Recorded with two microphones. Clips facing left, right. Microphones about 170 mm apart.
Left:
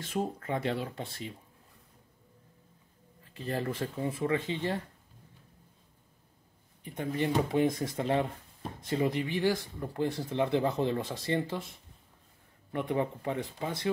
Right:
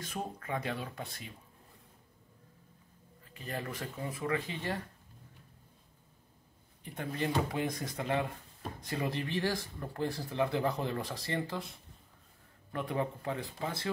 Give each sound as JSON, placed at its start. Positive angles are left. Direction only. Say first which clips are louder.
{"t": 0.0, "sound": "speech", "louder": "left 6 dB", "side_deg": 25}
{"t": 3.3, "sound": "speech", "louder": "left 6 dB", "side_deg": 30}
{"t": 6.8, "sound": "speech", "louder": "left 4 dB", "side_deg": 20}
{"t": 12.7, "sound": "speech", "louder": "left 4 dB", "side_deg": 20}